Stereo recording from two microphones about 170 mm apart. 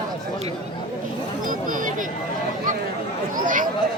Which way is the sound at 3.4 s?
50° right (ahead or behind).